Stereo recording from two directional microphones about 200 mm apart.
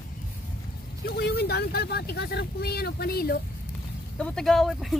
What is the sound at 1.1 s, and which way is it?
Speech, 50° left (ahead or behind).